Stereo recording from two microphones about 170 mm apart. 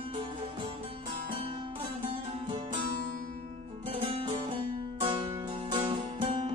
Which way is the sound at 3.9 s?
30° right (ahead or behind).